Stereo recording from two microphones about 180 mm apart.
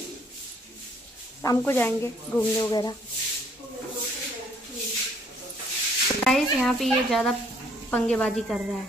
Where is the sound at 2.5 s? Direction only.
25° left (ahead or behind).